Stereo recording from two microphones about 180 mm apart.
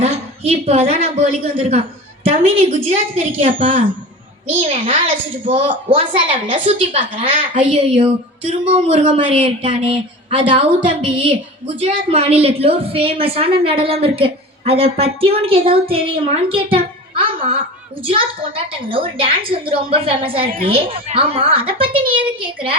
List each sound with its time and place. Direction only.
0.0 s a woman's voice: 35° right (ahead or behind)